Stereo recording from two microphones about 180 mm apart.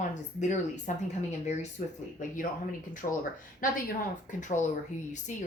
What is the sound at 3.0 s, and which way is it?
Speech, 45° left (ahead or behind).